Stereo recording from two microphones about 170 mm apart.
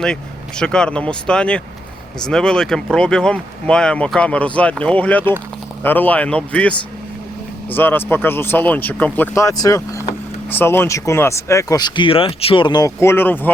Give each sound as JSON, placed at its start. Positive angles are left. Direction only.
{"t": 0.0, "sound": "speech", "side_deg": 5}